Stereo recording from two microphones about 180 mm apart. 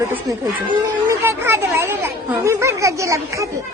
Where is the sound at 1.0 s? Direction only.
15° right (ahead or behind).